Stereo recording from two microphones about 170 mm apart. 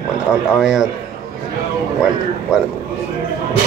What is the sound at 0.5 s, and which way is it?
Speech, 5° right (ahead or behind).